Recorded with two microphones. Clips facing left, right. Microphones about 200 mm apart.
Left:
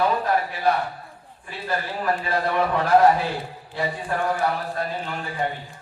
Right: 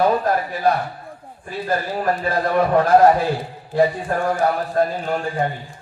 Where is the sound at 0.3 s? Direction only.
45° right (ahead or behind).